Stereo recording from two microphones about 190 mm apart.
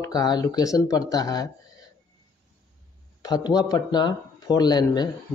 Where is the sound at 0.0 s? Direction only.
20° left (ahead or behind).